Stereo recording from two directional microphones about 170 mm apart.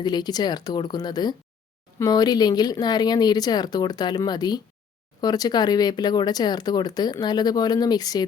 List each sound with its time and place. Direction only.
0.0 s speech: 25° left (ahead or behind)